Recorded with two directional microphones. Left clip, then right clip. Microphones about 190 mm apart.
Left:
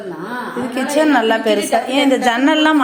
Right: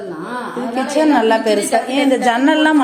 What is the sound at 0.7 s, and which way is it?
A woman's voice, centre (ahead or behind).